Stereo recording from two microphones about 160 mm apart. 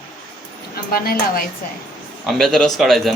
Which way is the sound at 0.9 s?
65° left (ahead or behind).